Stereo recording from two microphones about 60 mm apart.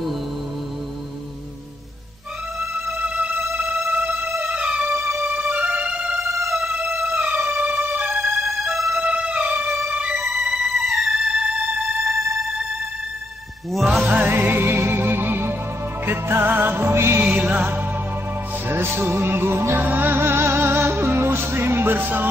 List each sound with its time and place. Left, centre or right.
2.7 s music: right
4.0 s music: right
4.5 s music: centre
4.9 s music: right
5.2 s music: right
6.2 s music: right
7.1 s music: right
8.4 s music: centre
9.0 s music: centre
10.3 s music: centre
13.9 s music: right
17.2 s music: right